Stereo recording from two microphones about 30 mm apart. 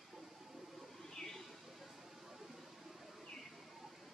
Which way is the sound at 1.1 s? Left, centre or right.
Centre.